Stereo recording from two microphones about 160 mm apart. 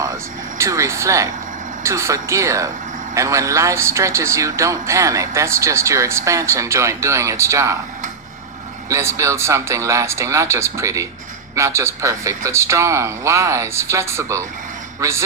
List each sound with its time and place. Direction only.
0.6 s a man's voice: 20° right (ahead or behind)
8.9 s a man's voice: 15° right (ahead or behind)